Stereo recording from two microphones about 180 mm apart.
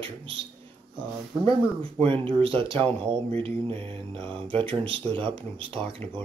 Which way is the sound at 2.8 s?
10° left (ahead or behind).